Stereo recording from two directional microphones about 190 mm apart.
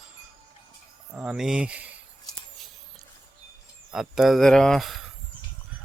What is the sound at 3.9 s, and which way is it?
Speech, centre (ahead or behind).